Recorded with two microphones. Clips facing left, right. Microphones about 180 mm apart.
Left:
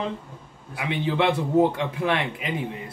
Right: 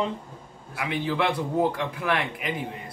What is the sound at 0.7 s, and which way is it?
A man's voice, 25° left (ahead or behind).